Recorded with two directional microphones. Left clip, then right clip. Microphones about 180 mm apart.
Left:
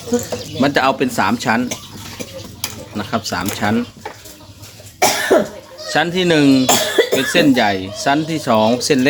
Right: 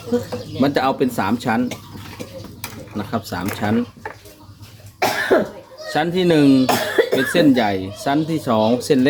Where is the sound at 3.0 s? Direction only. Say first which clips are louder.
Left 4 dB; centre (ahead or behind).